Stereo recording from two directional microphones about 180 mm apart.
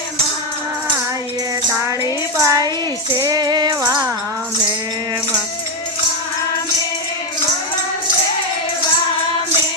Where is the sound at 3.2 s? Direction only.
20° right (ahead or behind).